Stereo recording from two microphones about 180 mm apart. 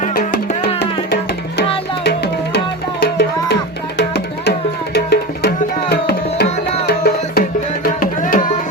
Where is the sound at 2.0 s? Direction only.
70° left (ahead or behind).